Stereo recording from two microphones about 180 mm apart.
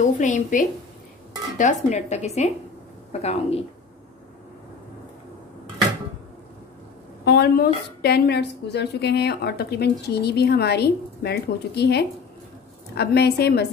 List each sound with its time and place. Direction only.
0.0 s a woman's voice: 45° left (ahead or behind)
7.2 s a woman's voice: 65° left (ahead or behind)